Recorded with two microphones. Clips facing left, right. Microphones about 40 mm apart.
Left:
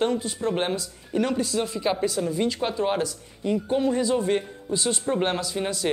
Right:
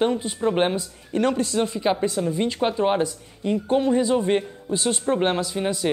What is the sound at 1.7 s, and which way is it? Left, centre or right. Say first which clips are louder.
Speech: right 2 dB; centre.